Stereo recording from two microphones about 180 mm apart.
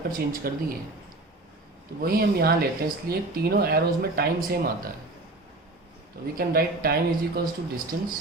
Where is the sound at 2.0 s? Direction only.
55° right (ahead or behind).